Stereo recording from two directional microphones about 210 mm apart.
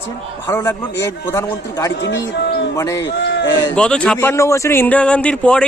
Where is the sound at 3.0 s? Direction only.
55° left (ahead or behind).